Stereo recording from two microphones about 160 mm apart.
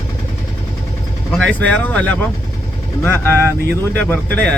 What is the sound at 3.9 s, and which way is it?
Speech, 10° left (ahead or behind).